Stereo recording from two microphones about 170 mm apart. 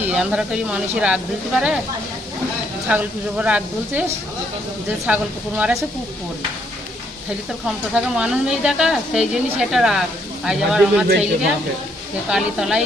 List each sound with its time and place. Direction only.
0.0 s speech: 10° right (ahead or behind)
2.8 s speech: 5° right (ahead or behind)
5.0 s speech: 10° right (ahead or behind)
7.9 s speech: 5° right (ahead or behind)
12.3 s speech: 5° right (ahead or behind)